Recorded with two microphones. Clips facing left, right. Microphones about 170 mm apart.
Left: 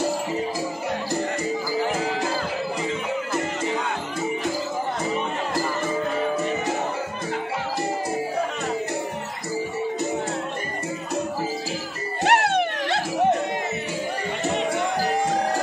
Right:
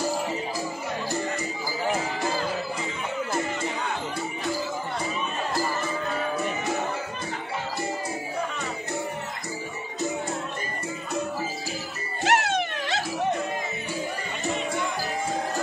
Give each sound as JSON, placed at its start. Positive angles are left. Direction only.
{"t": 12.3, "sound": "wail", "side_deg": 60}
{"t": 14.5, "sound": "music", "side_deg": 65}